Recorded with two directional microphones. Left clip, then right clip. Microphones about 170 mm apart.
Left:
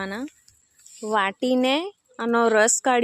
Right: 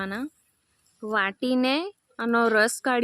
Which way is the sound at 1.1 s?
Centre (ahead or behind).